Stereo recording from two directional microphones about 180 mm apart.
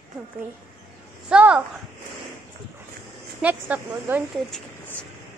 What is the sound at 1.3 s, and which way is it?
Speech, 5° right (ahead or behind).